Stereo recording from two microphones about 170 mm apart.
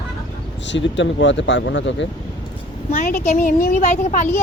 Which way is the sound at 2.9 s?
50° left (ahead or behind).